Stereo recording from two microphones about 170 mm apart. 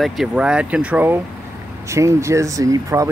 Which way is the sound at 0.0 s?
Centre (ahead or behind).